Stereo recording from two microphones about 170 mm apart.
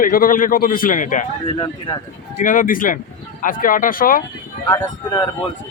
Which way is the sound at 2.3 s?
50° left (ahead or behind).